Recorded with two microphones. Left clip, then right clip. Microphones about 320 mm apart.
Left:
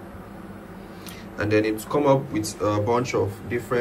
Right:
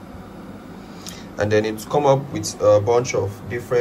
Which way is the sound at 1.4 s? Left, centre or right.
Centre.